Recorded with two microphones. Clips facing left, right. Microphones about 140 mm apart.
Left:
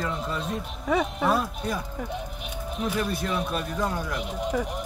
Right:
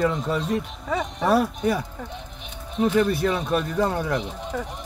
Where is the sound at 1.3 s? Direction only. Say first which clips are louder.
Right 5 dB; 70° right (ahead or behind).